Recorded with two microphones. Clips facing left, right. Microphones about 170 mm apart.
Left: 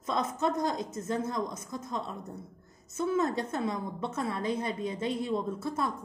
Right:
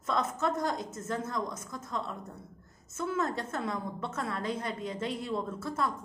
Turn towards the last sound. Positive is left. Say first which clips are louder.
# left 1 dB
turn(degrees=15)  # may be behind; listen again after turning